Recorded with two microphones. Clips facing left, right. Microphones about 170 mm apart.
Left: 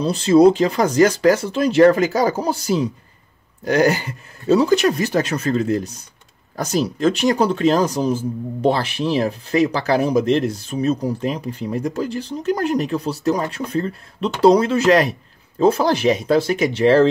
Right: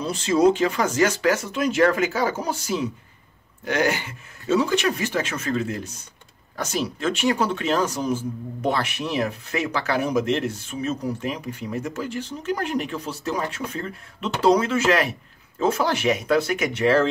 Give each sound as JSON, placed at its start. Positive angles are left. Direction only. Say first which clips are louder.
{"t": 0.0, "sound": "speech", "louder": "left 6 dB", "side_deg": 35}